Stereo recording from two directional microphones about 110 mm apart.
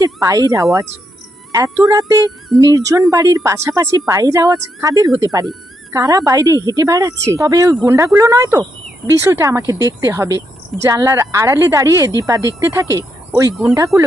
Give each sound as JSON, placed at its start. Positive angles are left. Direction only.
{"t": 0.0, "sound": "speech", "side_deg": -30}